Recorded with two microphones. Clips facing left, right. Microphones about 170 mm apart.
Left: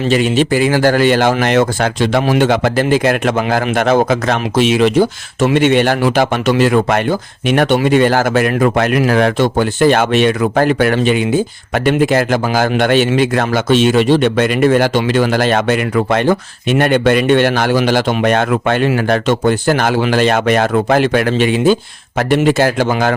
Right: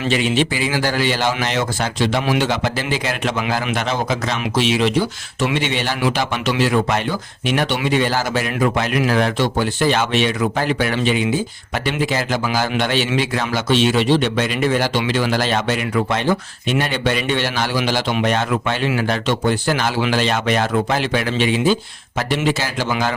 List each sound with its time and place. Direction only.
0.1 s speech: 45° left (ahead or behind)